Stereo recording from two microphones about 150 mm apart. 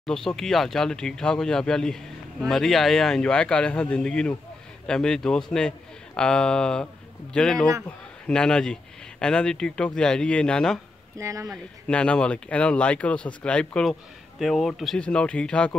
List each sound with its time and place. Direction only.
0.0 s speech: 5° left (ahead or behind)
11.1 s speech: 20° right (ahead or behind)
11.9 s speech: 5° left (ahead or behind)